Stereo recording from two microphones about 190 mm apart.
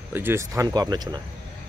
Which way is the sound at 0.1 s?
10° right (ahead or behind).